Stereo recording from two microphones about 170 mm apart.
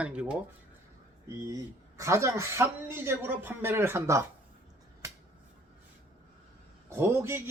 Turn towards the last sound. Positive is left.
turn(degrees=-15)  # may be behind; listen again after turning